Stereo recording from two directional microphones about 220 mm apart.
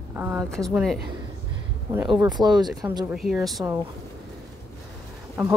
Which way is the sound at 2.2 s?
20° right (ahead or behind).